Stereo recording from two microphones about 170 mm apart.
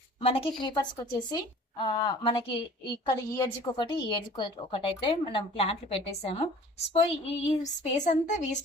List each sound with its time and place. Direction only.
0.2 s a woman's voice: 35° left (ahead or behind)
1.8 s a woman's voice: 25° left (ahead or behind); by 8.4 s 45° left (ahead or behind)